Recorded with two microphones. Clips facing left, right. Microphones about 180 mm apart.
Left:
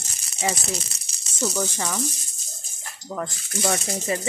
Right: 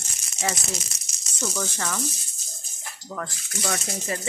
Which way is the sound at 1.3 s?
15° left (ahead or behind).